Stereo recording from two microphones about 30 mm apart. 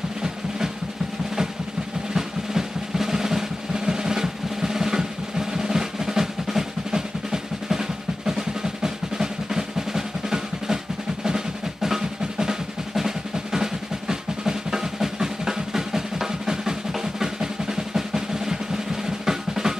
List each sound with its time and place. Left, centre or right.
2.1 s drum roll: centre
11.2 s drum: centre